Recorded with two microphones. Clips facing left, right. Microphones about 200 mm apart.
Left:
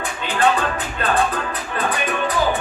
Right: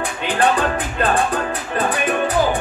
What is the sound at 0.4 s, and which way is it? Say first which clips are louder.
Music: right 1 dB; 30° right (ahead or behind).